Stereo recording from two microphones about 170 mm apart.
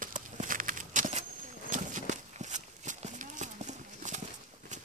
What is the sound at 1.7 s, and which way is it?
Horse, 50° right (ahead or behind).